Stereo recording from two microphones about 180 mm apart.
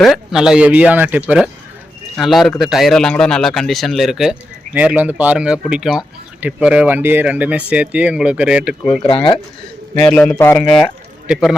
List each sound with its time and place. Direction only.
0.0 s a man's voice: centre (ahead or behind)
9.0 s speech: 30° left (ahead or behind)
10.0 s a man's voice: 5° left (ahead or behind)